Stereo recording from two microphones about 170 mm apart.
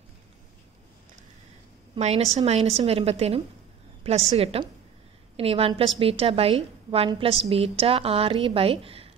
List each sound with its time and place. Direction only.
2.0 s a woman's voice: 40° right (ahead or behind)